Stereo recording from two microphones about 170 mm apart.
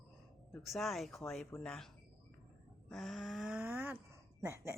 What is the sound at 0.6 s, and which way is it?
Speech, centre (ahead or behind).